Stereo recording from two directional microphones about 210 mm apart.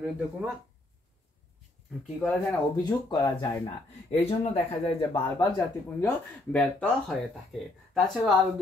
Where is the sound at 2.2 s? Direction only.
5° left (ahead or behind).